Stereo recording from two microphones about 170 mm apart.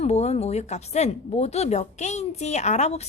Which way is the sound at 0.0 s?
40° left (ahead or behind).